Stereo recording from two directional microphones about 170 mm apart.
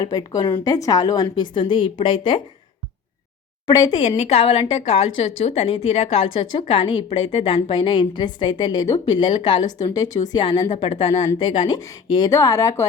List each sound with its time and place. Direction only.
0.0 s a woman's voice: 25° left (ahead or behind)
3.7 s a woman's voice: 25° left (ahead or behind)
4.2 s a woman's voice: 35° left (ahead or behind)
9.6 s a woman's voice: 40° left (ahead or behind)
9.9 s a woman's voice: 20° left (ahead or behind)